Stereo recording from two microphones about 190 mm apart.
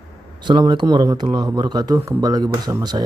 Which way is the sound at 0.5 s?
25° right (ahead or behind).